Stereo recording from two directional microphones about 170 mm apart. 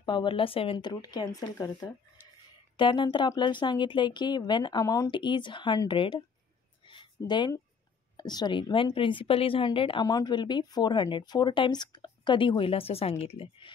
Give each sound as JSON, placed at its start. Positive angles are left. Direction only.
{"t": 0.0, "sound": "a woman's voice", "side_deg": 30}
{"t": 6.8, "sound": "a sound", "side_deg": 30}
{"t": 8.2, "sound": "a woman's voice", "side_deg": 25}